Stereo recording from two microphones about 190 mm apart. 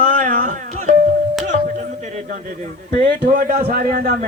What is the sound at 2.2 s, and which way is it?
A man's voice, 40° right (ahead or behind).